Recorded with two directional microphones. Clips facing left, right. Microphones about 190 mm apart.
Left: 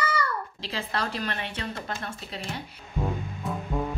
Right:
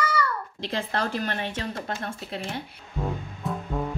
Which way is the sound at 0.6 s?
55° right (ahead or behind).